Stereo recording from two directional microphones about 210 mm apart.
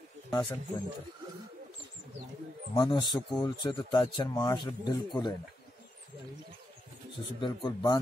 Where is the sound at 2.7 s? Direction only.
20° left (ahead or behind).